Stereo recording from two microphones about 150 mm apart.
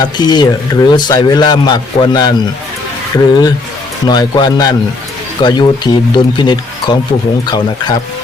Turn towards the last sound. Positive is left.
turn(degrees=30)  # may be behind; listen again after turning